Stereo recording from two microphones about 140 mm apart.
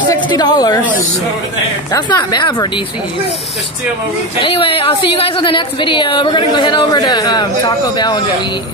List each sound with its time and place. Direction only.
0.1 s a woman's voice: 30° left (ahead or behind)
1.9 s speech: 25° left (ahead or behind)
4.4 s a woman's voice: 40° left (ahead or behind)